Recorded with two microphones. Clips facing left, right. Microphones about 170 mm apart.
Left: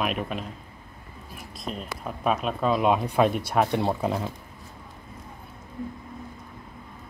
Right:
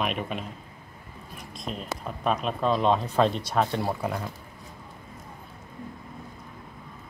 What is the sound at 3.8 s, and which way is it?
Speech, 20° left (ahead or behind).